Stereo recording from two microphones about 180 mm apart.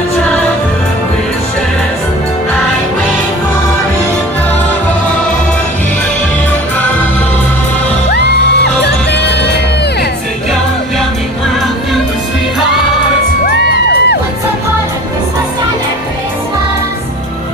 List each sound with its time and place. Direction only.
13.5 s crowd: 65° left (ahead or behind)